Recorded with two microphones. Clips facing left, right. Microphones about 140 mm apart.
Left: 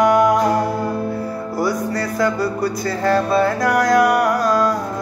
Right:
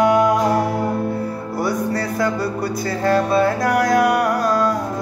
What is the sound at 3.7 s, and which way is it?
Music, 45° left (ahead or behind).